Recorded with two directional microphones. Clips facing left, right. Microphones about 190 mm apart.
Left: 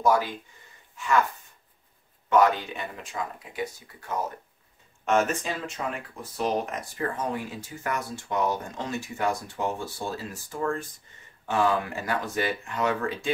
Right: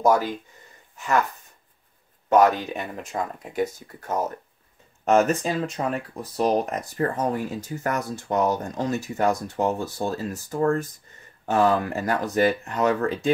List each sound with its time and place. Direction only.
0.0 s speech: 45° right (ahead or behind)
2.2 s speech: 45° right (ahead or behind)